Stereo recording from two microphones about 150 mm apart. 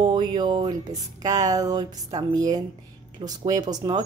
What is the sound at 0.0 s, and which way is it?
Speech, 30° right (ahead or behind).